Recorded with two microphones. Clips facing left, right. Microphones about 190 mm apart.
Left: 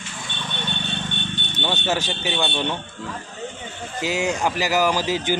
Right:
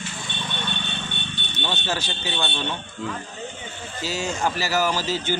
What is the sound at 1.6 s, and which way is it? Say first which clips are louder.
Speech: left 4 dB; 15° left (ahead or behind).